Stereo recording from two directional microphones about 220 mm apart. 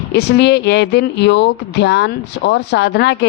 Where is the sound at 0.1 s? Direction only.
50° left (ahead or behind).